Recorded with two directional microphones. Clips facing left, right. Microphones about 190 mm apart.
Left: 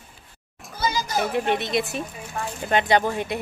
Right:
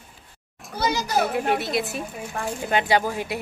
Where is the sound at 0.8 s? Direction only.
65° right (ahead or behind).